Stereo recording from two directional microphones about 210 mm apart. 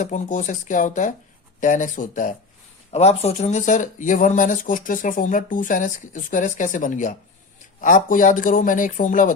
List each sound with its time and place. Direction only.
0.0 s speech: 35° left (ahead or behind)